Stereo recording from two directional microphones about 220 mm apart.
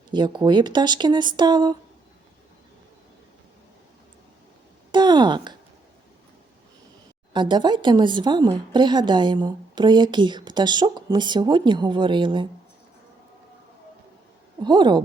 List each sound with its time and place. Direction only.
0.1 s a woman's voice: 20° right (ahead or behind)
4.9 s a sound: 20° right (ahead or behind)
7.3 s a woman's voice: 20° right (ahead or behind)
14.6 s a woman's voice: 20° right (ahead or behind)